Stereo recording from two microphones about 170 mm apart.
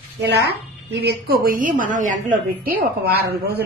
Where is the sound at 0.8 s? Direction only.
75° right (ahead or behind); by 2.7 s 55° right (ahead or behind).